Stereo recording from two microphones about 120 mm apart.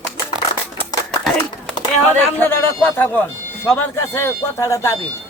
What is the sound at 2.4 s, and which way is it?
Speech, 15° left (ahead or behind).